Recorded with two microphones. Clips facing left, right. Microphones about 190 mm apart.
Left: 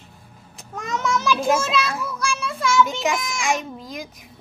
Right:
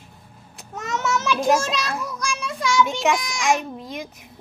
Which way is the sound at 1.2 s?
Centre (ahead or behind).